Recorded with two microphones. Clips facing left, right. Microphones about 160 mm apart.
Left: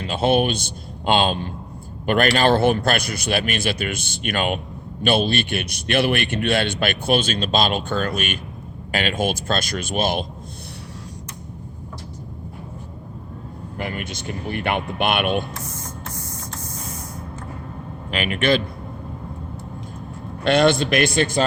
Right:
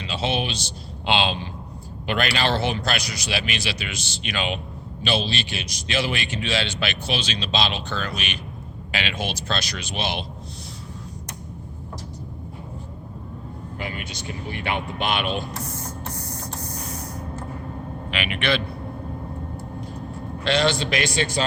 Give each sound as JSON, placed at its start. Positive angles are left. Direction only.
{"t": 0.0, "sound": "a man's voice", "side_deg": 50}
{"t": 13.7, "sound": "speech", "side_deg": 50}
{"t": 18.1, "sound": "a man's voice", "side_deg": 45}
{"t": 20.4, "sound": "a man's voice", "side_deg": 55}